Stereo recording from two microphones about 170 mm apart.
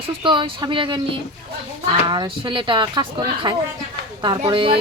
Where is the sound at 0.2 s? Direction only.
30° right (ahead or behind).